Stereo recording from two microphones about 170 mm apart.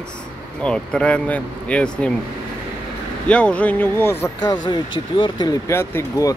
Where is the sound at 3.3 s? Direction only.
5° left (ahead or behind).